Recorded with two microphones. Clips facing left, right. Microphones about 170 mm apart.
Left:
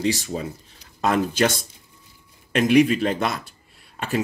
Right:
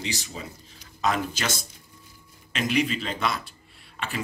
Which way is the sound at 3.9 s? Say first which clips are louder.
Left 7 dB; 40° left (ahead or behind).